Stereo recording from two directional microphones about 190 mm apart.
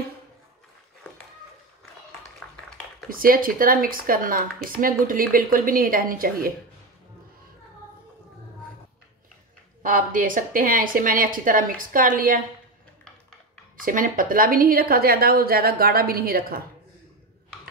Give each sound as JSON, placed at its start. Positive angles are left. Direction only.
{"t": 3.1, "sound": "a woman's voice", "side_deg": -50}
{"t": 9.8, "sound": "a woman's voice", "side_deg": -45}
{"t": 13.7, "sound": "a woman's voice", "side_deg": -45}